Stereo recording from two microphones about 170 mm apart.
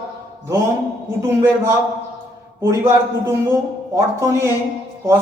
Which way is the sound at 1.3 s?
15° right (ahead or behind).